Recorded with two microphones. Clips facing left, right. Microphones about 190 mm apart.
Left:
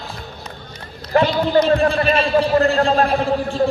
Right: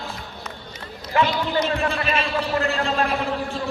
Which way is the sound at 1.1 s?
40° left (ahead or behind).